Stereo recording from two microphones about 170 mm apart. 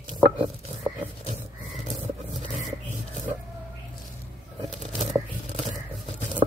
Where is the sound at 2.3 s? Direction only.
Centre (ahead or behind).